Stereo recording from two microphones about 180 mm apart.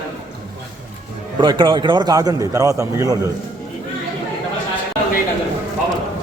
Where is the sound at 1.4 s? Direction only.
25° right (ahead or behind).